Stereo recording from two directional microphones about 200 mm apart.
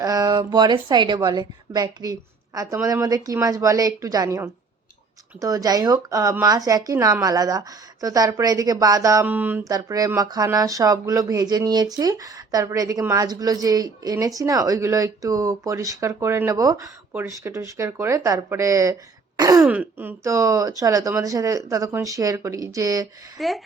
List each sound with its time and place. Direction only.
0.0 s a woman's voice: 15° right (ahead or behind)
19.6 s speech: 10° right (ahead or behind)
23.4 s speech: centre (ahead or behind)